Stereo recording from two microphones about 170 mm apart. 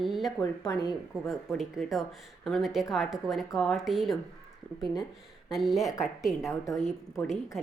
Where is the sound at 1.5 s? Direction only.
Centre (ahead or behind).